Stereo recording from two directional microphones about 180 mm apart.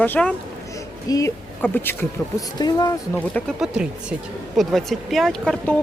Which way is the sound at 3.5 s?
5° right (ahead or behind).